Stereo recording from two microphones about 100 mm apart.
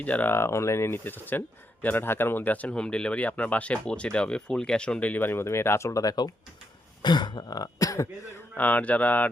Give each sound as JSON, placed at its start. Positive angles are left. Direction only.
{"t": 0.0, "sound": "speech", "side_deg": 15}
{"t": 7.0, "sound": "throat clearing", "side_deg": 50}
{"t": 8.5, "sound": "speech", "side_deg": 15}